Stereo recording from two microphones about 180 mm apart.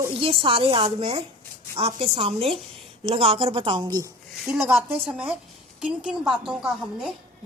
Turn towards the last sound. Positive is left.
turn(degrees=-5)  # may be behind; listen again after turning